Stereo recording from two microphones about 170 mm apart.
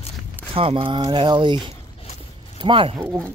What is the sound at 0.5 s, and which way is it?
Speech, 30° right (ahead or behind).